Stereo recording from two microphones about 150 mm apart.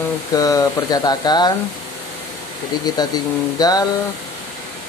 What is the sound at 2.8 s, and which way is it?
Speech, 25° left (ahead or behind).